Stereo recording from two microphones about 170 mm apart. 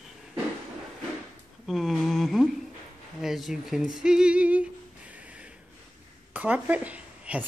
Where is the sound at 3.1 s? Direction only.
Centre (ahead or behind).